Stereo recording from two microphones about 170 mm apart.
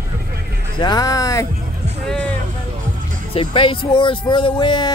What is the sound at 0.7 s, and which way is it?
Speech, 25° left (ahead or behind).